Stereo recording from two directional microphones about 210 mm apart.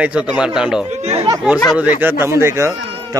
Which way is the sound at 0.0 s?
5° right (ahead or behind).